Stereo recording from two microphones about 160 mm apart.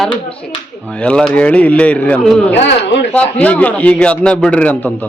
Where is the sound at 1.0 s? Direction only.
5° left (ahead or behind).